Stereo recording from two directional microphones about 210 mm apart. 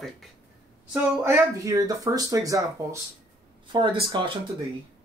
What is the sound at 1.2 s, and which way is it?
Speech, 15° right (ahead or behind).